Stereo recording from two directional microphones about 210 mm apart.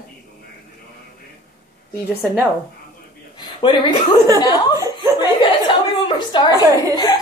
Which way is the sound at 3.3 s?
20° left (ahead or behind).